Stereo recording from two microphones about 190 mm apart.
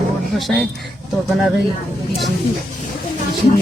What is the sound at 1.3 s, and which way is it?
Speech, centre (ahead or behind).